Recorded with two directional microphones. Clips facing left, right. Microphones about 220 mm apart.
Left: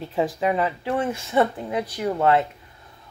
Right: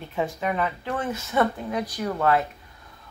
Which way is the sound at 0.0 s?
35° left (ahead or behind).